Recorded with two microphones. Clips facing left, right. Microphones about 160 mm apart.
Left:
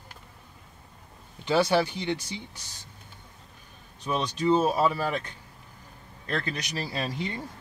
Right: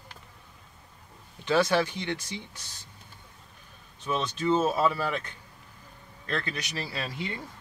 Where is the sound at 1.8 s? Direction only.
30° left (ahead or behind).